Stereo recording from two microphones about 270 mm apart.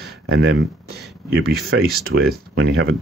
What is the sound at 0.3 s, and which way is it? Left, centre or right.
Speech, right.